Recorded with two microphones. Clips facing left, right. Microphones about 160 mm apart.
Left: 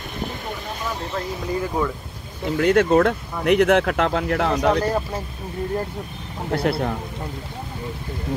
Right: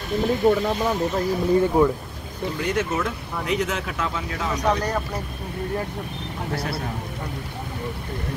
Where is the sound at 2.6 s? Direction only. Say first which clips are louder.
Left 10 dB; 60° left (ahead or behind).